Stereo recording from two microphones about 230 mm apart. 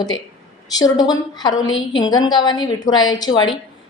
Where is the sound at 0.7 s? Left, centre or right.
Centre.